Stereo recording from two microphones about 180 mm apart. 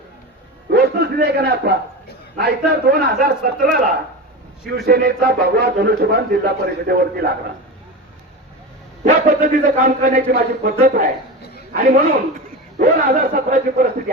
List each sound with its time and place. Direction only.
0.7 s a sound: 65° right (ahead or behind)
2.4 s speech: 60° right (ahead or behind)
4.8 s speech: 60° right (ahead or behind)
9.0 s a man's voice: 50° right (ahead or behind)
12.8 s a man's voice: 50° right (ahead or behind)